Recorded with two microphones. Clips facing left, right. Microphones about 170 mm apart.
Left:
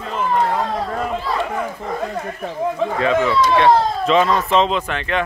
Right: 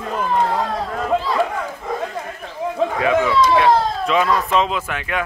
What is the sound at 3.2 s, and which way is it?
Speech, 20° left (ahead or behind).